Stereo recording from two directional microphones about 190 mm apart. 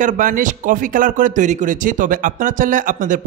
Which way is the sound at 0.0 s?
45° right (ahead or behind).